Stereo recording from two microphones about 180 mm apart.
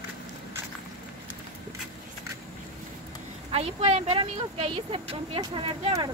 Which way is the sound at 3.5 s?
35° right (ahead or behind).